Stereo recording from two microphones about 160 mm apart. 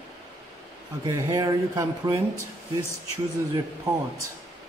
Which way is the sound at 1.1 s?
20° right (ahead or behind).